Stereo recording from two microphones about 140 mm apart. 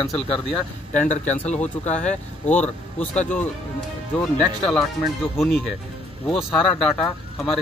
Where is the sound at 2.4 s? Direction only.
10° left (ahead or behind).